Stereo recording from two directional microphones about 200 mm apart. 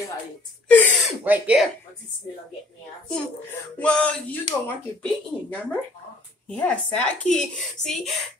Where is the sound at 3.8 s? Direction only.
5° left (ahead or behind).